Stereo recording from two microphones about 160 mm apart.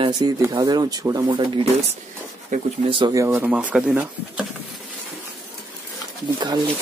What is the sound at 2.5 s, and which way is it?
Speech, 50° right (ahead or behind).